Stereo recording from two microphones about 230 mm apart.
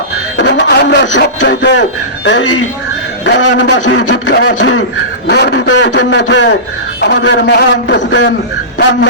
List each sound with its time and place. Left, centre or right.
0.3 s a man's voice: left